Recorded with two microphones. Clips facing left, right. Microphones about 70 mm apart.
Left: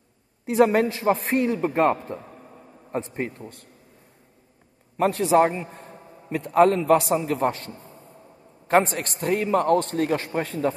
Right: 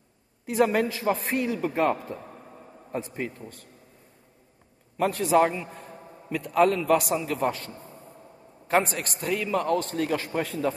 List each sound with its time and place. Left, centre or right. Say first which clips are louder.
0.5 s a man's voice: left 4 dB; left
4.9 s a man's voice: left 3 dB; left